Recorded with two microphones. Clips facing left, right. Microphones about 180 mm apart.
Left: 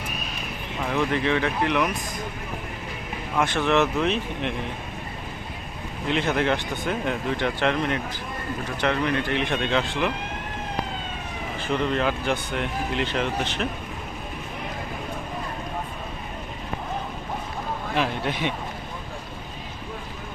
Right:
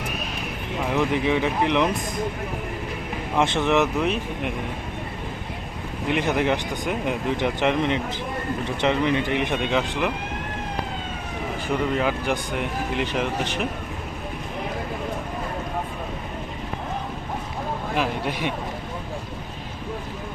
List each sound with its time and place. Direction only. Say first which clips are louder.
0.9 s speech: right 1 dB; 15° right (ahead or behind)
3.3 s speech: right 1 dB; 20° right (ahead or behind)
6.1 s speech: right 1 dB; 15° right (ahead or behind)
11.7 s speech: even; 10° right (ahead or behind)
17.9 s speech: even; 10° right (ahead or behind)